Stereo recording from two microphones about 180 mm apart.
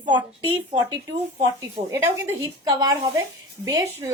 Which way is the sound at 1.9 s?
15° right (ahead or behind).